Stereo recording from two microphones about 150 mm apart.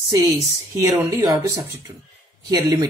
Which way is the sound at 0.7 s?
15° right (ahead or behind).